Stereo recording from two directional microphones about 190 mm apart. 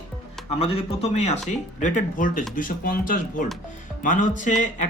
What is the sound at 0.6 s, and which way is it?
A man's voice, 30° left (ahead or behind).